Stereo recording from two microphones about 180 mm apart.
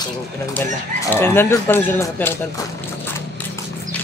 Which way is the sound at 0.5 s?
10° left (ahead or behind).